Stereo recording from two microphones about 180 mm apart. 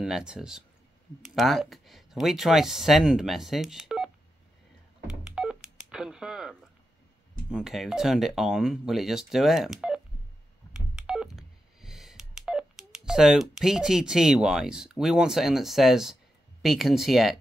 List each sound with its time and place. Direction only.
0.0 s speech: 5° right (ahead or behind)
5.0 s telephone dialing: 5° right (ahead or behind)
5.9 s a sound: 5° right (ahead or behind)
7.4 s speech: 5° right (ahead or behind)
10.7 s telephone dialing: 5° right (ahead or behind)
16.6 s speech: centre (ahead or behind)